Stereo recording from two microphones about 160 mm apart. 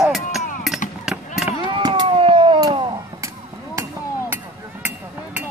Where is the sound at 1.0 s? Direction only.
5° right (ahead or behind).